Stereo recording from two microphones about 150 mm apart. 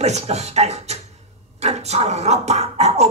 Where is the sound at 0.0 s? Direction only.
45° right (ahead or behind).